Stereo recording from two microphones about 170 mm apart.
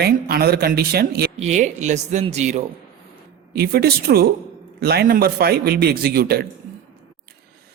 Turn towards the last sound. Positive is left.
turn(degrees=-65)  # may be behind; listen again after turning